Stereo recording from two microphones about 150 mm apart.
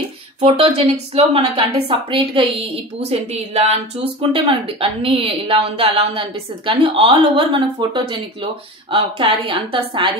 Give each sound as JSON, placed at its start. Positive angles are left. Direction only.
{"t": 0.4, "sound": "a woman's voice", "side_deg": -45}